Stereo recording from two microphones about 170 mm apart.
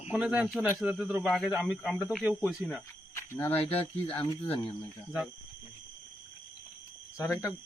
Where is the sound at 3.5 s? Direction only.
35° left (ahead or behind).